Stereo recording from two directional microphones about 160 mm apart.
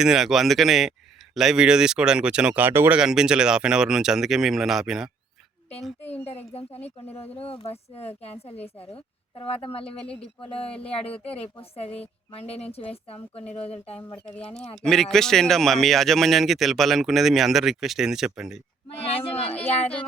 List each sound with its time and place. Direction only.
0.0 s speech: 5° right (ahead or behind)
6.0 s speech: 10° left (ahead or behind)
6.2 s speech: 40° left (ahead or behind)
14.3 s speech: 5° left (ahead or behind)
19.1 s speech: 40° left (ahead or behind)